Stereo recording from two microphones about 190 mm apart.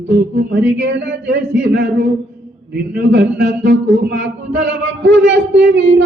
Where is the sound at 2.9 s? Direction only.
65° right (ahead or behind).